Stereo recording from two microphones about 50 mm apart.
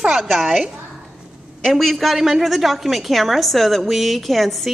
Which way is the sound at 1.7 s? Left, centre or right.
Centre.